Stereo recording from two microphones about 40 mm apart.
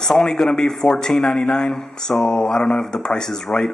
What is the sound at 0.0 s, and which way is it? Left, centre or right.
Speech, centre.